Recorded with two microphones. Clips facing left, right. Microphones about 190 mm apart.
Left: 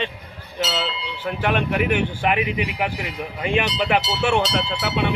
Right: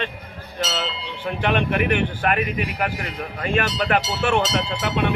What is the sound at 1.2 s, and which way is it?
Speech, 5° left (ahead or behind).